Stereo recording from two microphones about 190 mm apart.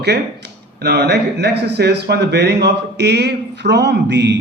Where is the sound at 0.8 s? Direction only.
65° right (ahead or behind).